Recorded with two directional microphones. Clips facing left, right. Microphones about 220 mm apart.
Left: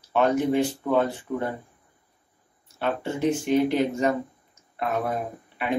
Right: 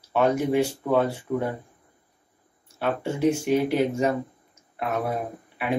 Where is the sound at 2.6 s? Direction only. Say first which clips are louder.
Right 1 dB; 5° right (ahead or behind).